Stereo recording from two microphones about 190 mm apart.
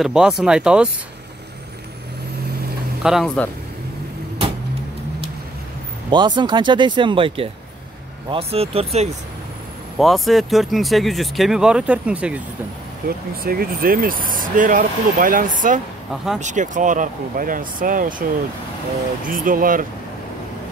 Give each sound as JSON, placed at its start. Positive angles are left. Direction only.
{"t": 0.0, "sound": "speech", "side_deg": 0}
{"t": 3.0, "sound": "speech", "side_deg": 0}
{"t": 6.0, "sound": "speech", "side_deg": -25}
{"t": 9.9, "sound": "speech", "side_deg": 0}
{"t": 13.4, "sound": "speech", "side_deg": -50}
{"t": 19.2, "sound": "speech", "side_deg": -45}